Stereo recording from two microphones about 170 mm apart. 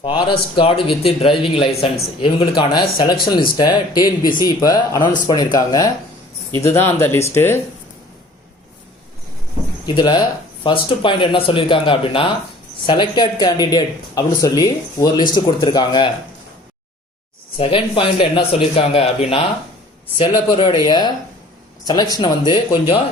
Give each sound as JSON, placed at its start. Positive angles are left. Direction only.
{"t": 0.0, "sound": "speech", "side_deg": 30}
{"t": 9.8, "sound": "speech", "side_deg": 25}
{"t": 17.6, "sound": "speech", "side_deg": 30}